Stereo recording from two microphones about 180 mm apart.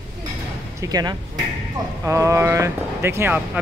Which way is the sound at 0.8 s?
20° right (ahead or behind).